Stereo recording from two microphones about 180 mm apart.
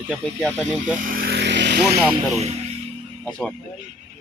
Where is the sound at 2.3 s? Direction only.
35° right (ahead or behind).